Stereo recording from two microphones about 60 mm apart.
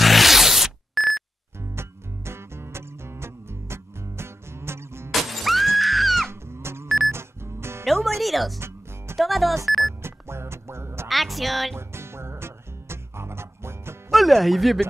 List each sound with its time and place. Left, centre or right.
0.0 s a sound: centre
1.8 s music: right
5.1 s music: centre
6.5 s music: right
7.8 s music: centre
8.2 s a woman's voice: centre
8.5 s music: right
9.1 s speech: centre
9.8 s music: right
11.1 s a woman's voice: centre
11.7 s music: right
14.1 s speech: centre